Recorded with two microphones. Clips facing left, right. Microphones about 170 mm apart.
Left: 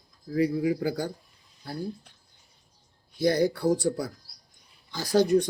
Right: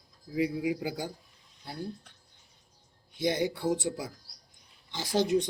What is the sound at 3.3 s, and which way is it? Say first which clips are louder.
Speech: left 6 dB; 40° left (ahead or behind).